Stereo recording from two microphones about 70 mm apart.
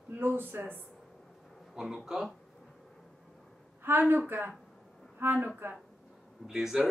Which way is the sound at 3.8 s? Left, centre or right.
Right.